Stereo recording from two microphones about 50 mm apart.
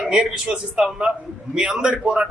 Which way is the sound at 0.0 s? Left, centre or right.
Centre.